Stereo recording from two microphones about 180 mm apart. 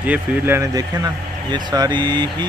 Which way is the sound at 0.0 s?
10° right (ahead or behind).